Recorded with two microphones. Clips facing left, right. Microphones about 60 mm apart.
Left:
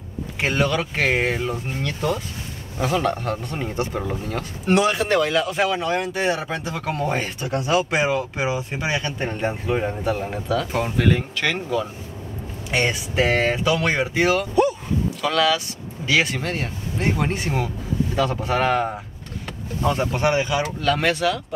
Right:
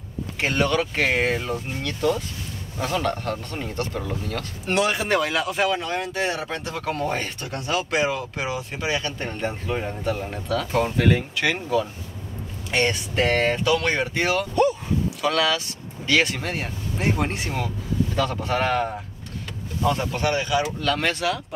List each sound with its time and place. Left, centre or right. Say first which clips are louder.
0.4 s speech: even; centre
4.6 s speech: left 3 dB; centre
12.7 s speech: left 1 dB; centre
19.8 s speech: left 2 dB; left
20.8 s speech: left 3 dB; centre